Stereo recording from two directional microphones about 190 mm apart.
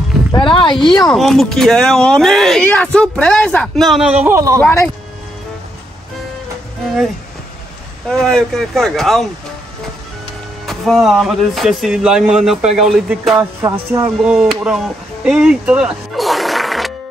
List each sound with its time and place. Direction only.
0.3 s speech: 25° left (ahead or behind)
0.9 s speech: centre (ahead or behind); by 4.6 s 15° right (ahead or behind)
4.6 s speech: 10° left (ahead or behind)
8.1 s speech: 5° left (ahead or behind)
10.7 s speech: centre (ahead or behind)
13.6 s music: 15° right (ahead or behind)
14.2 s speech: 5° right (ahead or behind)